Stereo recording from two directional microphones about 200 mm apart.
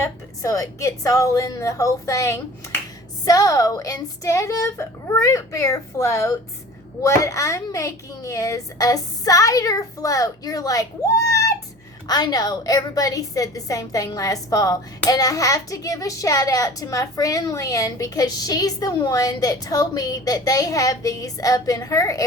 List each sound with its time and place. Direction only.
0.0 s a woman's voice: 15° left (ahead or behind)